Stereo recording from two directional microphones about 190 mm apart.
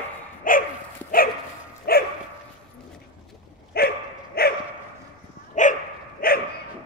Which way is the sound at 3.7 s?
55° left (ahead or behind).